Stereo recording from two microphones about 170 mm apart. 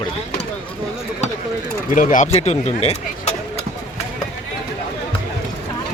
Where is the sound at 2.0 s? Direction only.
50° left (ahead or behind).